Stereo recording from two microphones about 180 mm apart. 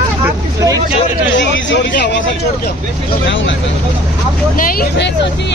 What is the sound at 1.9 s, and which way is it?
Speech, 65° left (ahead or behind).